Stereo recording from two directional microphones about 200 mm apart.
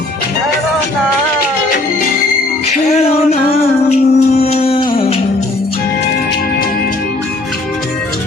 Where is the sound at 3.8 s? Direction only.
30° left (ahead or behind).